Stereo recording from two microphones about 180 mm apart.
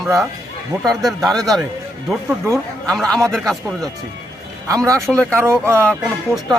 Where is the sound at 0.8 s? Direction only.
Centre (ahead or behind).